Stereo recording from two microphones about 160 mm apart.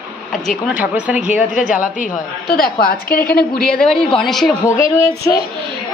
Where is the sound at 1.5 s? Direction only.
50° left (ahead or behind).